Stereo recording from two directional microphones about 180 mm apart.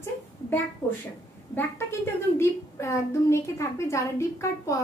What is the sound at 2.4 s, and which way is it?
A woman's voice, 15° left (ahead or behind).